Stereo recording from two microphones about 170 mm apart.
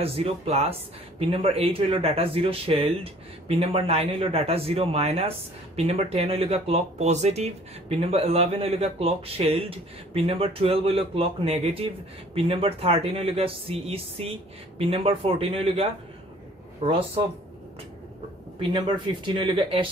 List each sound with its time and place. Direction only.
0.0 s speech: 35° right (ahead or behind)
18.6 s speech: 30° right (ahead or behind)